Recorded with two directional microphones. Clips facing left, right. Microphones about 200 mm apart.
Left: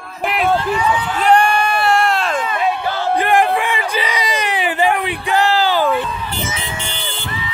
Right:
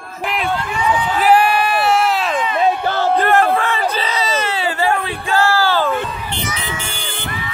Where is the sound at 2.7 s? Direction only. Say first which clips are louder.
Right 2 dB; 45° right (ahead or behind).